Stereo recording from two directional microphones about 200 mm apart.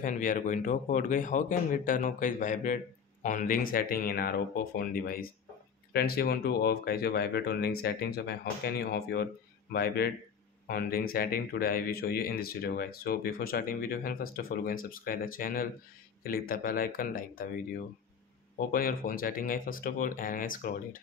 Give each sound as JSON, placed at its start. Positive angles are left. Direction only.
{"t": 0.0, "sound": "speech", "side_deg": 40}
{"t": 18.7, "sound": "speech", "side_deg": 45}